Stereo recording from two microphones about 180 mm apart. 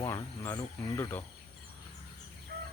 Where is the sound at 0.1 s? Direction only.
10° left (ahead or behind).